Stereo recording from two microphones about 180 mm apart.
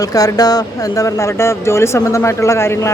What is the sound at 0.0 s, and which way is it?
Speech, 20° left (ahead or behind).